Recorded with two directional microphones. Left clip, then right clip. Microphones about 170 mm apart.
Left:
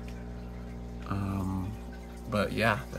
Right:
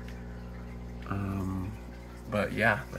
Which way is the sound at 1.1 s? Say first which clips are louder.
Left 1 dB; 10° left (ahead or behind).